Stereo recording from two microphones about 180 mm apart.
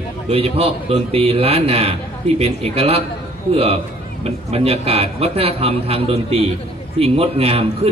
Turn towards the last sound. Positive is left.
turn(degrees=-35)  # may be behind; listen again after turning